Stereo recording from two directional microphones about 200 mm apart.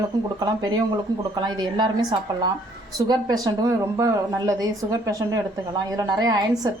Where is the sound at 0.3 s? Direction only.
20° right (ahead or behind).